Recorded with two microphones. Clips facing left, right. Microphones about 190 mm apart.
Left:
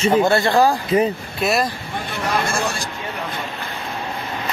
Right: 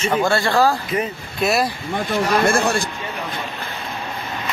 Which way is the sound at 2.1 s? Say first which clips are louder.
Right 5 dB; 60° right (ahead or behind).